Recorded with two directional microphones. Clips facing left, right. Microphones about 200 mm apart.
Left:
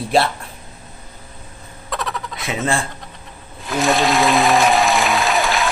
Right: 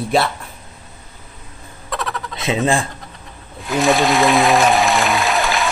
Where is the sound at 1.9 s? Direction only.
Centre (ahead or behind).